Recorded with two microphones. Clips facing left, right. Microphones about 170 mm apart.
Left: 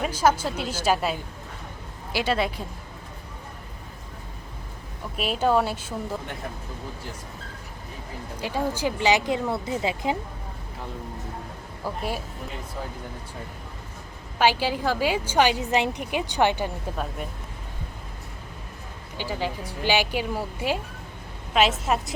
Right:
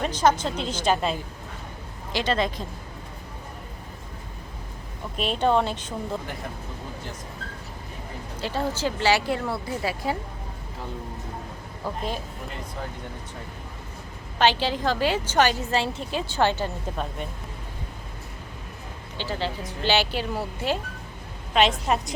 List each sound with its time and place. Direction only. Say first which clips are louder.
0.0 s a woman's voice: even; 10° left (ahead or behind)
5.1 s a woman's voice: even; 5° left (ahead or behind)
8.4 s speech: even; 15° left (ahead or behind)
14.3 s a woman's voice: even; 10° left (ahead or behind)
19.1 s a woman's voice: even; 10° left (ahead or behind)